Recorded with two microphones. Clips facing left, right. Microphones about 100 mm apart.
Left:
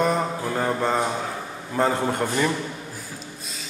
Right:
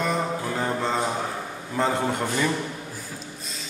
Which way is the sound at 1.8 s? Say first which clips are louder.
Left 2 dB; 45° left (ahead or behind).